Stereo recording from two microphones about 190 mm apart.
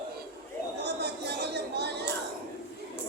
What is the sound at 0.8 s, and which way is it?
Chatter, 60° right (ahead or behind).